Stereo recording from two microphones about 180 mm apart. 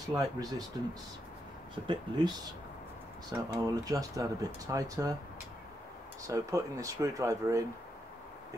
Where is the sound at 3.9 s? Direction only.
20° right (ahead or behind).